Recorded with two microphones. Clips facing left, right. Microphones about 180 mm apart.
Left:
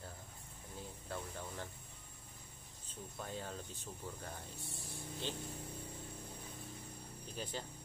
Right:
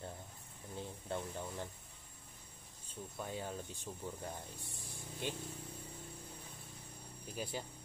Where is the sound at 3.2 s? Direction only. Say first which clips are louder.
Right 2 dB; 10° right (ahead or behind).